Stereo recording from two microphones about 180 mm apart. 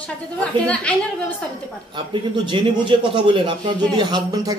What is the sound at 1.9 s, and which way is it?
A man's voice, 25° right (ahead or behind).